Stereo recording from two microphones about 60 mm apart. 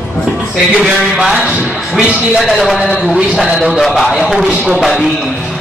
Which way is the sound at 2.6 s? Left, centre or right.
Centre.